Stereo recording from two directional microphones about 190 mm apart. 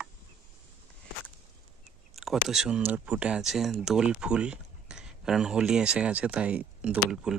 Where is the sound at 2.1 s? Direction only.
Centre (ahead or behind).